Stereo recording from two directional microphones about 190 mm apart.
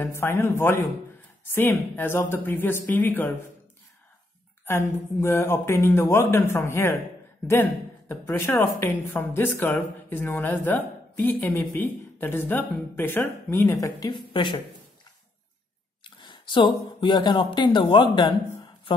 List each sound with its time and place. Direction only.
0.0 s a woman's voice: 15° left (ahead or behind)
4.6 s a woman's voice: 10° left (ahead or behind)
8.1 s a woman's voice: 10° left (ahead or behind)
16.0 s speech: 25° left (ahead or behind)